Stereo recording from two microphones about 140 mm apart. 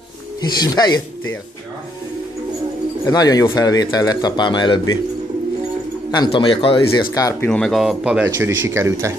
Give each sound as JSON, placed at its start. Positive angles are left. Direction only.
{"t": 0.6, "sound": "speech", "side_deg": 30}
{"t": 3.1, "sound": "speech", "side_deg": 25}
{"t": 6.1, "sound": "speech", "side_deg": 35}
{"t": 7.3, "sound": "speech", "side_deg": 5}